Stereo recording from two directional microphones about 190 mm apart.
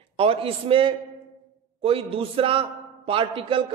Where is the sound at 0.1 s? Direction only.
30° right (ahead or behind).